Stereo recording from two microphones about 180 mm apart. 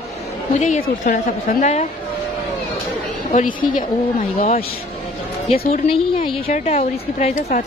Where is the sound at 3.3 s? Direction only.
45° left (ahead or behind).